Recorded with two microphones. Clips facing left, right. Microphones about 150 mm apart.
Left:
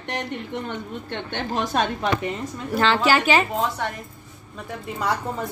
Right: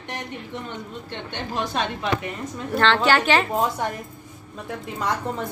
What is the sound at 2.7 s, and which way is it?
Speech, 5° left (ahead or behind).